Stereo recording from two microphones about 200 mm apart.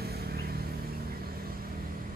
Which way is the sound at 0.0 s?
50° right (ahead or behind).